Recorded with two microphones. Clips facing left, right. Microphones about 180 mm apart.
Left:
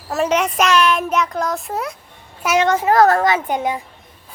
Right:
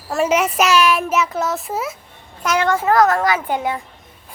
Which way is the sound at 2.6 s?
20° left (ahead or behind).